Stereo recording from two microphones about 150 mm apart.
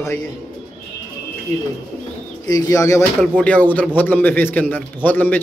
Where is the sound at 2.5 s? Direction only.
20° left (ahead or behind).